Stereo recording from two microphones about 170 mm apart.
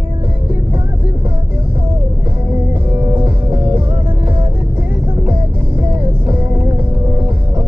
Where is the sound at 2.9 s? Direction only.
15° right (ahead or behind).